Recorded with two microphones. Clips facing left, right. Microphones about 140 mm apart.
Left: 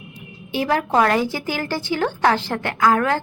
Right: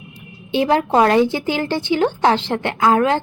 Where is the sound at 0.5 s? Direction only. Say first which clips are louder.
Right 4 dB; 25° right (ahead or behind).